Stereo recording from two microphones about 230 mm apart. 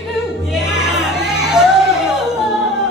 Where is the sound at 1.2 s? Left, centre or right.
Centre.